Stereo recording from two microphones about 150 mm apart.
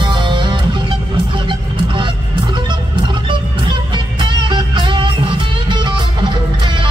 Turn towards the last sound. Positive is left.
turn(degrees=-30)  # may be behind; listen again after turning